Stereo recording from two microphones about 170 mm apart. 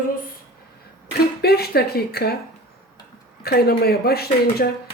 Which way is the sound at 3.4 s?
65° left (ahead or behind).